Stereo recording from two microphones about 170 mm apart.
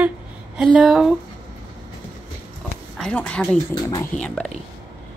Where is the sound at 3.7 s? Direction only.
20° left (ahead or behind).